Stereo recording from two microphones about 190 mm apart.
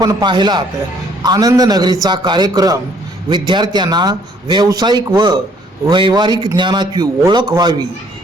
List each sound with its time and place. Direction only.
0.0 s a man's voice: 20° right (ahead or behind)